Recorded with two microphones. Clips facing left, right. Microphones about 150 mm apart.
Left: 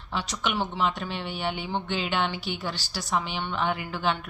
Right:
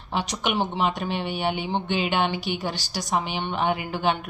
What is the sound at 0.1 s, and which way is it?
Speech, 15° right (ahead or behind).